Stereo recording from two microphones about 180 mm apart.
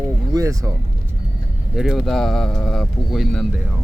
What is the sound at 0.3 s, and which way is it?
Speech, 20° right (ahead or behind).